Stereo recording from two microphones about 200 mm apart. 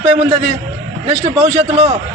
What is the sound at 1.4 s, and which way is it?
Speech, 35° right (ahead or behind).